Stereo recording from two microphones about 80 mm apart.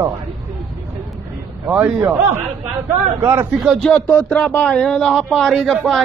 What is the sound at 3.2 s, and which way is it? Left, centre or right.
Speech, right.